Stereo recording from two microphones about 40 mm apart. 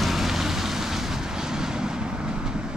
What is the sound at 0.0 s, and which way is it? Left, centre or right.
Vehicle, centre.